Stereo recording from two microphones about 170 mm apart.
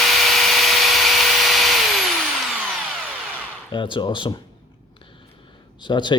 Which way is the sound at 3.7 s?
30° left (ahead or behind).